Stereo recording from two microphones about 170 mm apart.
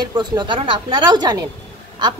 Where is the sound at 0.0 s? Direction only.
25° right (ahead or behind).